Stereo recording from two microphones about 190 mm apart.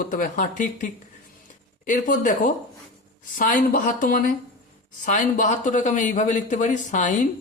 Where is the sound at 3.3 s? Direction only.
45° left (ahead or behind).